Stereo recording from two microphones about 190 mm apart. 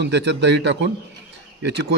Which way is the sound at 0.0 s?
65° right (ahead or behind).